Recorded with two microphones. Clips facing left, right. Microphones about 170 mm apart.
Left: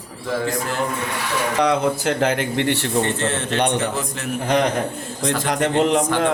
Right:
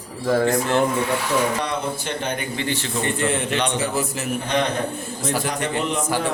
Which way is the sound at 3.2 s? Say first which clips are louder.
Left 1 dB; 15° right (ahead or behind).